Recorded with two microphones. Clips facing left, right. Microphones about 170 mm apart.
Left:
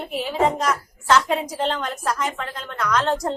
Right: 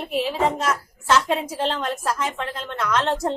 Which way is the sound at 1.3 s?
5° right (ahead or behind).